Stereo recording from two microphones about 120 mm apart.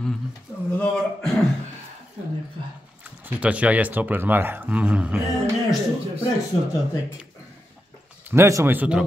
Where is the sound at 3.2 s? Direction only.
10° right (ahead or behind).